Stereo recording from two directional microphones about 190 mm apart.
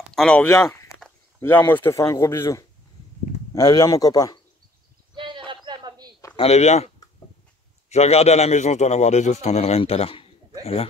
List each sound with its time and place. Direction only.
0.1 s speech: 5° left (ahead or behind)
0.6 s speech: 15° left (ahead or behind)
5.1 s a sound: 25° right (ahead or behind)
6.3 s a man's voice: 35° left (ahead or behind)
7.9 s a man's voice: 35° left (ahead or behind)